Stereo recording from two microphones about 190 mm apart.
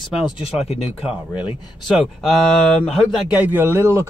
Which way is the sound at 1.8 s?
Centre (ahead or behind).